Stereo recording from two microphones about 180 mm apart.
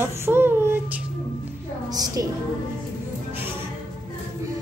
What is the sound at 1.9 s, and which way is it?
Speech, 20° right (ahead or behind).